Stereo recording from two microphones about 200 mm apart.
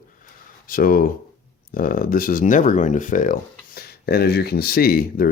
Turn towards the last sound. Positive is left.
turn(degrees=50)  # may be behind; listen again after turning